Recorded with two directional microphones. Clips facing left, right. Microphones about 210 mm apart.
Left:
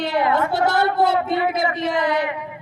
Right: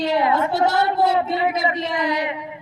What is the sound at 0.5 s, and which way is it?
Speech, 55° left (ahead or behind).